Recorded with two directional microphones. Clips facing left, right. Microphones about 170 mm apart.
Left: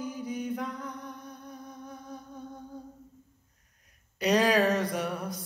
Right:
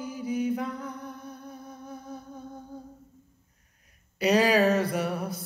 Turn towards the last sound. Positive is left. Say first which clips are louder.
# right 3 dB
turn(degrees=-5)  # may be behind; listen again after turning